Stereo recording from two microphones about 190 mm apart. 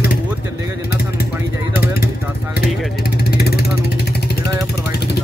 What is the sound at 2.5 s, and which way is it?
Vehicle, 55° left (ahead or behind).